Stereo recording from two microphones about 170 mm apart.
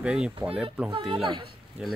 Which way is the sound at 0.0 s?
5° right (ahead or behind).